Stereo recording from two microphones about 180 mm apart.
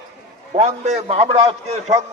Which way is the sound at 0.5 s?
40° right (ahead or behind).